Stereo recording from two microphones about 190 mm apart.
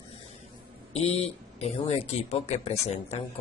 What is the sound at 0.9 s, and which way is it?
A man's voice, 35° left (ahead or behind).